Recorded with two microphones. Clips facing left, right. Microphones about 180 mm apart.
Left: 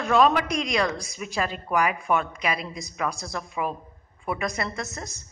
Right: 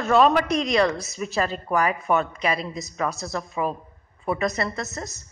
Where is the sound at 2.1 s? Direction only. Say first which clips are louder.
Right 2 dB; 10° left (ahead or behind).